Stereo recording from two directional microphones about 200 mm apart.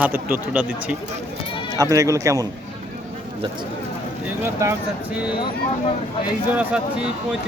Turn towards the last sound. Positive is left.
turn(degrees=-5)  # may be behind; listen again after turning